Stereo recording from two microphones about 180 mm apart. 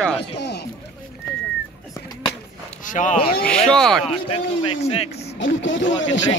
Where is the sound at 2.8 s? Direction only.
45° left (ahead or behind).